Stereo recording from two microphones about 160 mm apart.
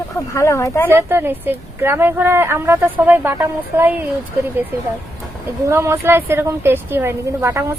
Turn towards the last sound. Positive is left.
turn(degrees=-15)  # may be behind; listen again after turning